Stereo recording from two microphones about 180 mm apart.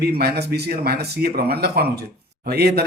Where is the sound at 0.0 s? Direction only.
60° right (ahead or behind).